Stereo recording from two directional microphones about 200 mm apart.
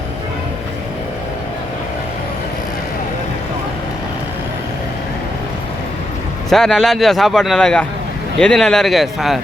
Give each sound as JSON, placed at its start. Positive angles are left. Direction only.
{"t": 6.5, "sound": "a man's voice", "side_deg": 0}